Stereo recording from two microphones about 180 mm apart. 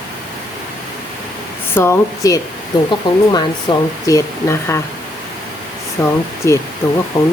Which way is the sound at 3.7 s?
25° left (ahead or behind).